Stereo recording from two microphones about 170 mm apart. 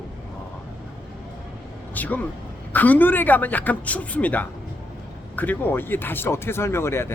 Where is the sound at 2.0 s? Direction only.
10° left (ahead or behind).